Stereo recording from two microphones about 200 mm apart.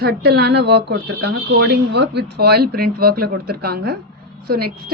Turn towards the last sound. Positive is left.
turn(degrees=-50)  # may be behind; listen again after turning